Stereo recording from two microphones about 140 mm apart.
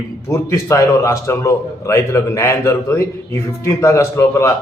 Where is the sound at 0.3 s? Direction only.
20° left (ahead or behind).